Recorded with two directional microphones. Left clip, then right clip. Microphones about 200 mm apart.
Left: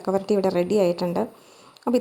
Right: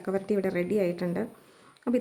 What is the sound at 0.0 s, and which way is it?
A woman's voice, 20° right (ahead or behind).